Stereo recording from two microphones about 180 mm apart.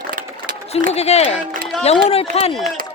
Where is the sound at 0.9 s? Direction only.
35° left (ahead or behind).